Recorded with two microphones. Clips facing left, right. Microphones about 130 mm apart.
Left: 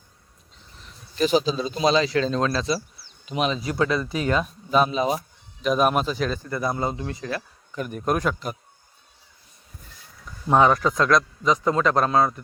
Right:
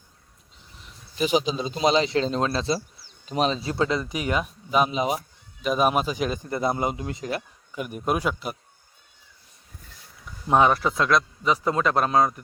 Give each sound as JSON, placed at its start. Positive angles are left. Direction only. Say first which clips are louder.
{"t": 1.1, "sound": "speech", "louder": "left 2 dB", "side_deg": -15}
{"t": 3.2, "sound": "speech", "louder": "right 1 dB", "side_deg": -35}
{"t": 5.6, "sound": "speech", "louder": "left 1 dB", "side_deg": -5}
{"t": 7.8, "sound": "speech", "louder": "left 1 dB", "side_deg": -10}
{"t": 10.5, "sound": "speech", "louder": "left 1 dB", "side_deg": -15}